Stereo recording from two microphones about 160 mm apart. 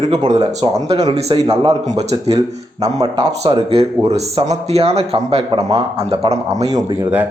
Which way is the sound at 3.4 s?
40° right (ahead or behind).